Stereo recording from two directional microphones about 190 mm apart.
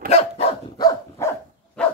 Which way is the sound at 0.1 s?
30° left (ahead or behind).